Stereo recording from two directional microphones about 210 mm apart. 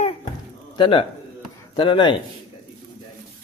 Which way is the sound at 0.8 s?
25° left (ahead or behind).